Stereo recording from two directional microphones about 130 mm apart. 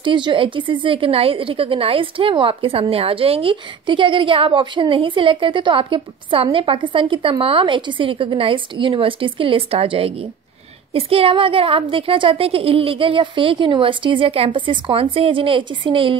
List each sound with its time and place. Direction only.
0.0 s a woman's voice: 40° right (ahead or behind)